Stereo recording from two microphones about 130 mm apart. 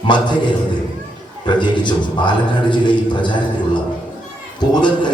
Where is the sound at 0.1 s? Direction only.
35° left (ahead or behind).